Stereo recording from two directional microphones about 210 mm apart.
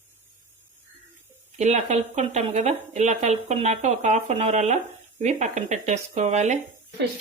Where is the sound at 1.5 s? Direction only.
35° right (ahead or behind).